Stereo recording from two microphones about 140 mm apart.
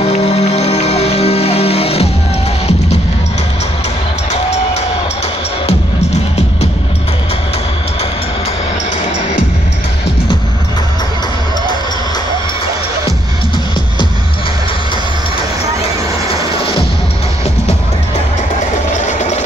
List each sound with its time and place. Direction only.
0.0 s music: 50° left (ahead or behind)
16.3 s music: 40° left (ahead or behind)
19.0 s a sound: 55° left (ahead or behind)